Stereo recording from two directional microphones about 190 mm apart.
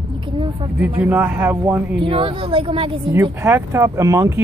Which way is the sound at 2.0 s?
25° right (ahead or behind).